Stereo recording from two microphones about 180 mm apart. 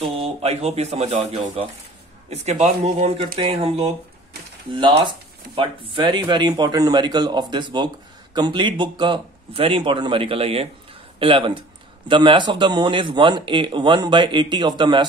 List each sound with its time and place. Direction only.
0.0 s speech: 30° right (ahead or behind)